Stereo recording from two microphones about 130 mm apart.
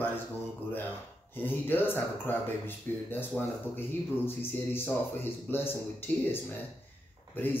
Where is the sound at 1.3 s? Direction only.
15° left (ahead or behind).